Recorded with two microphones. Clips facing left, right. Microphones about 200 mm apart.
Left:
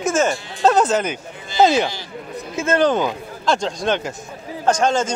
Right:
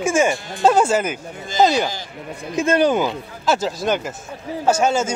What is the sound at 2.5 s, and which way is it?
Speech, 15° right (ahead or behind).